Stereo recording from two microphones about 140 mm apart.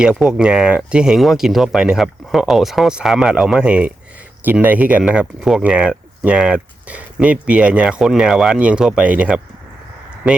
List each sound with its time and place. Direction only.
0.0 s speech: 5° right (ahead or behind)